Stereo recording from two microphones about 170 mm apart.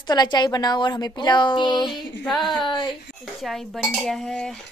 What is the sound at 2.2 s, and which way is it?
Speech, centre (ahead or behind).